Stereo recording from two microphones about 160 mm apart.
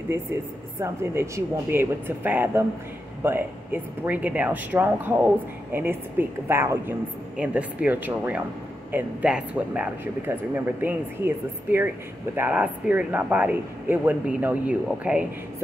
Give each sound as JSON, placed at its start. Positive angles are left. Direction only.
{"t": 0.7, "sound": "speech", "side_deg": -15}